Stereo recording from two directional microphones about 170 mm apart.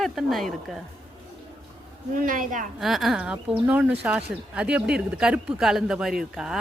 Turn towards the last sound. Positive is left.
turn(degrees=-5)  # may be behind; listen again after turning